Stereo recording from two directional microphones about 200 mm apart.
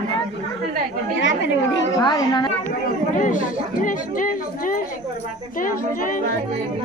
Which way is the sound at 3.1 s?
40° left (ahead or behind).